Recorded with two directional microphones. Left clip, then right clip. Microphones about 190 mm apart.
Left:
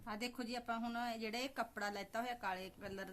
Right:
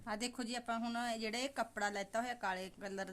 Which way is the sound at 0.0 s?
35° right (ahead or behind).